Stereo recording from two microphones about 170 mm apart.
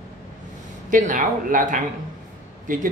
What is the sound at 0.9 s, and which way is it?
A woman's voice, 50° right (ahead or behind).